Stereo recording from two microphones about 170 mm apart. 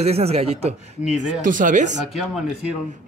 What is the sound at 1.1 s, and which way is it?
Speech, 50° right (ahead or behind).